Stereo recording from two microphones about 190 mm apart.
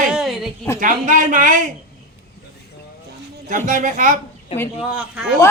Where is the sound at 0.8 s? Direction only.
45° right (ahead or behind).